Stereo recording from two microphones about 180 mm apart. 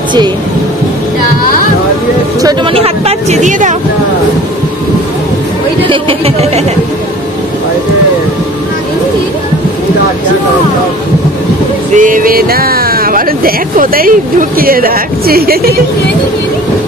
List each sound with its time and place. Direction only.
2.4 s speech: 30° right (ahead or behind)
5.9 s speech: 30° right (ahead or behind)
11.9 s speech: 45° right (ahead or behind)